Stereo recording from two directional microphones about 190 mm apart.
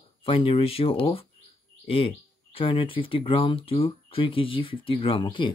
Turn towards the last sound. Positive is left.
turn(degrees=25)  # may be behind; listen again after turning